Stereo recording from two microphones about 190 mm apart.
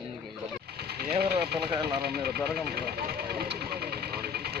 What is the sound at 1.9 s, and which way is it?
Vehicle, 55° right (ahead or behind).